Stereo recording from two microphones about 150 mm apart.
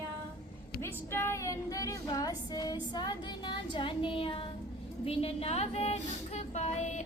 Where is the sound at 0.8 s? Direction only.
15° left (ahead or behind); by 4.4 s 35° left (ahead or behind).